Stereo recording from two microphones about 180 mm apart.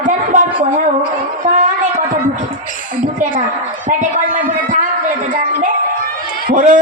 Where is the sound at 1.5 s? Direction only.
45° right (ahead or behind).